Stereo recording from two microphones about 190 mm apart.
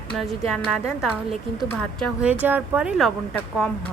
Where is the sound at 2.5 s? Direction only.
10° right (ahead or behind).